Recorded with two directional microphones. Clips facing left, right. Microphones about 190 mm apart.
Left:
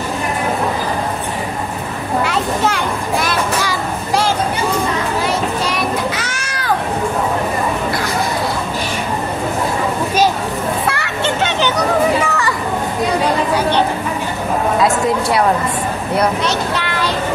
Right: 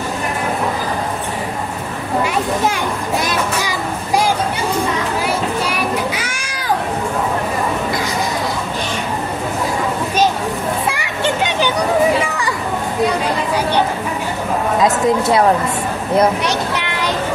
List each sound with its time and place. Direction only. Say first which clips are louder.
2.2 s children playing: even; 15° right (ahead or behind)
5.7 s children playing: left 1 dB; 10° right (ahead or behind)
10.9 s a sound: even; 15° right (ahead or behind)
12.2 s children playing: left 2 dB; 15° right (ahead or behind)
14.8 s speech: right 3 dB; 20° right (ahead or behind)